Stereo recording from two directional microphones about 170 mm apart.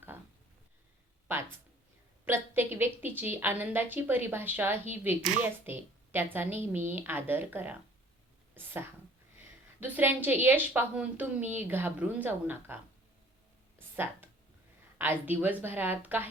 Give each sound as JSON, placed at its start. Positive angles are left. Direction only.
{"t": 2.2, "sound": "a woman's voice", "side_deg": -15}
{"t": 13.7, "sound": "a sound", "side_deg": -10}
{"t": 14.9, "sound": "a woman's voice", "side_deg": -10}